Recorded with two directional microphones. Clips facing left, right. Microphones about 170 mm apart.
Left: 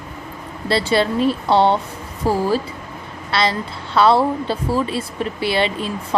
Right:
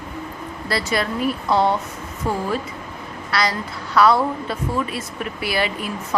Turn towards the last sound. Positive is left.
turn(degrees=25)  # may be behind; listen again after turning